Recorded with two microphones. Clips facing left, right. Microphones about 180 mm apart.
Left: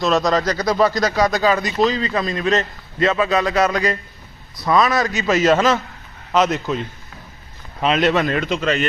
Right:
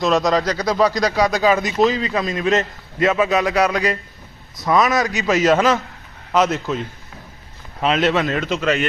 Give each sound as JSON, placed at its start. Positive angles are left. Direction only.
{"t": 0.1, "sound": "a man's voice", "side_deg": 0}